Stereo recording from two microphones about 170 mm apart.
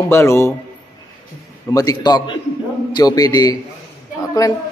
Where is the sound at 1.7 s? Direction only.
20° left (ahead or behind).